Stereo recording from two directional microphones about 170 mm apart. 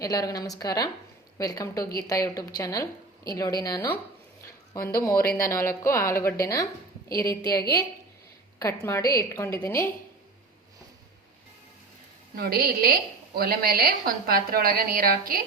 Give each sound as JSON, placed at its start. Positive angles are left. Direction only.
{"t": 0.0, "sound": "speech", "side_deg": 20}
{"t": 4.4, "sound": "a sound", "side_deg": 20}
{"t": 5.5, "sound": "a woman's voice", "side_deg": 15}
{"t": 12.4, "sound": "a woman's voice", "side_deg": -60}